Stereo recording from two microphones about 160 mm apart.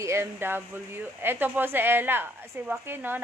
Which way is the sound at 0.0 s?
15° right (ahead or behind).